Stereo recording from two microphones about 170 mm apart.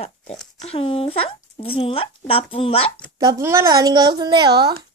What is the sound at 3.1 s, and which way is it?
Speech, 20° right (ahead or behind).